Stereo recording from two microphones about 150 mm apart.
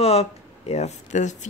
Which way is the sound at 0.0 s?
40° left (ahead or behind).